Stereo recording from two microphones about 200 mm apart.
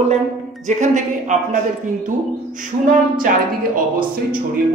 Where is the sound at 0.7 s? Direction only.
35° right (ahead or behind).